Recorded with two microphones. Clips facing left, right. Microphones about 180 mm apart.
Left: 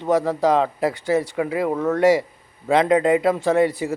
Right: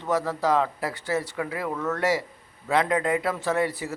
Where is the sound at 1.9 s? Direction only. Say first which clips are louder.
Left 9 dB; 15° left (ahead or behind).